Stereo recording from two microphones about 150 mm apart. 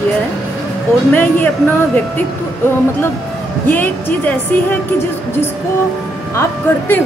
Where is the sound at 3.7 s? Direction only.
10° left (ahead or behind).